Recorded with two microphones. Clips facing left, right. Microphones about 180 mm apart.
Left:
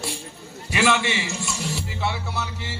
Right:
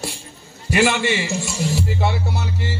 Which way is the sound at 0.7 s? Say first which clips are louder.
Right 3 dB; 50° right (ahead or behind).